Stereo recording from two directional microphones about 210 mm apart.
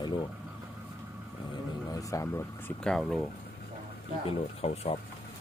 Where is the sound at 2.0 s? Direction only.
15° left (ahead or behind).